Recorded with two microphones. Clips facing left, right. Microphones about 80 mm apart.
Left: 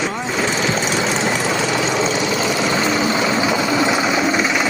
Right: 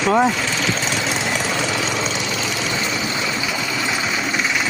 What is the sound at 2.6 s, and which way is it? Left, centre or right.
Vehicle, left.